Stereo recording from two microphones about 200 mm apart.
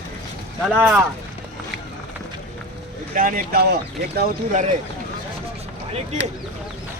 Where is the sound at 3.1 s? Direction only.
45° right (ahead or behind).